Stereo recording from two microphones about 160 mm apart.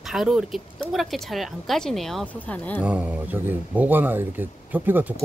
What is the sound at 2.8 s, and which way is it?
Speech, 10° right (ahead or behind).